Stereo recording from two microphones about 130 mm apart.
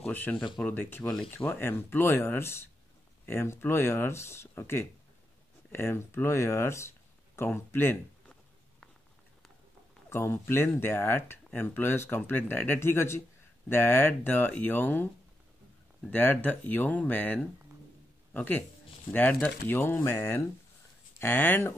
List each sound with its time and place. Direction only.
0.0 s speech: 15° left (ahead or behind)
10.0 s speech: 20° left (ahead or behind)
16.1 s a man's voice: 15° left (ahead or behind)